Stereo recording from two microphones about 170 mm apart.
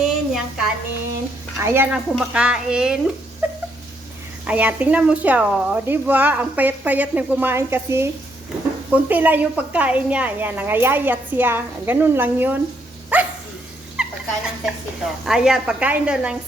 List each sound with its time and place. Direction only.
0.0 s a sound: 5° right (ahead or behind)
1.5 s a woman's voice: 15° right (ahead or behind)
3.4 s a sound: 10° right (ahead or behind)
4.4 s a woman's voice: 10° right (ahead or behind)
13.1 s dog: 10° right (ahead or behind)
13.9 s speech: 5° right (ahead or behind)